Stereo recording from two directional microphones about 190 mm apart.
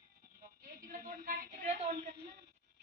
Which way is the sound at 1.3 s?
40° right (ahead or behind).